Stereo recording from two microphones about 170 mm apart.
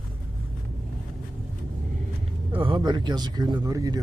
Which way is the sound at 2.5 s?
30° right (ahead or behind).